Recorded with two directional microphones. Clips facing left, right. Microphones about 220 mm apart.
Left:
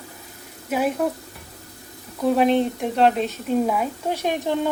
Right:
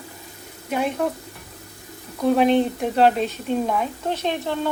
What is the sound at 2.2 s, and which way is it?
Speech, centre (ahead or behind).